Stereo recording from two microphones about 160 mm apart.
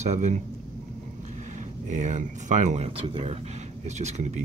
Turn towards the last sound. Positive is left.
turn(degrees=-45)  # may be behind; listen again after turning